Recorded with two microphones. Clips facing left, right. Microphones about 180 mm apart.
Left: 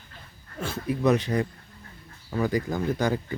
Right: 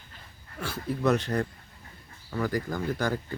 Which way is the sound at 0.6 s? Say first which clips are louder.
Left 3 dB; 20° left (ahead or behind).